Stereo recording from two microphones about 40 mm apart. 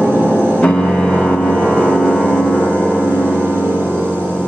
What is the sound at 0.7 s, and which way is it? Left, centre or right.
Music, centre.